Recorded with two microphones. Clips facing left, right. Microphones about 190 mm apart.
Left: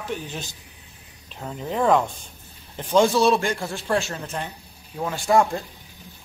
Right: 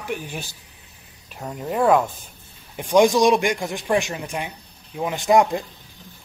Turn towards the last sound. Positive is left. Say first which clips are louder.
# right 2 dB
turn(degrees=-15)  # may be behind; listen again after turning